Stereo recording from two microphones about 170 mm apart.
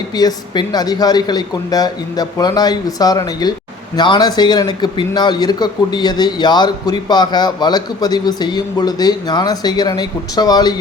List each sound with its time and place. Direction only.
0.2 s speech: 25° left (ahead or behind)